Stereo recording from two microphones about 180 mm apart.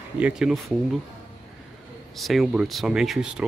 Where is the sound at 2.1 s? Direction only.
Centre (ahead or behind).